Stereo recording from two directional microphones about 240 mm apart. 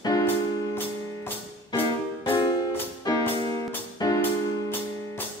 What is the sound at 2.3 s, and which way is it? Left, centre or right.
Music, centre.